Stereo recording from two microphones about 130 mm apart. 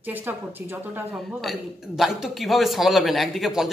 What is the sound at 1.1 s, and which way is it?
A man's voice, centre (ahead or behind).